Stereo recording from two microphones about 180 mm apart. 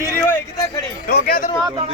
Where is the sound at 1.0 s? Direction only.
50° left (ahead or behind).